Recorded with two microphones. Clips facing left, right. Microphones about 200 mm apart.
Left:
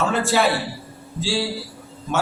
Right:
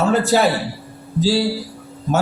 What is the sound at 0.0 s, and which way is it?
A man's voice, 40° right (ahead or behind).